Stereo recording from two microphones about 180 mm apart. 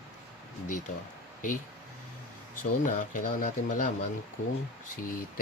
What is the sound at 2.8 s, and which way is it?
Speech, 45° left (ahead or behind).